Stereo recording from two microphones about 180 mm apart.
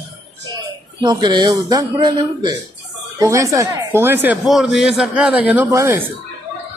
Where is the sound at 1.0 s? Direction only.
25° right (ahead or behind).